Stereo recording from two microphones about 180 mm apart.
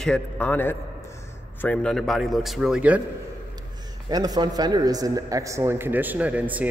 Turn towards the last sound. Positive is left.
turn(degrees=-10)  # may be behind; listen again after turning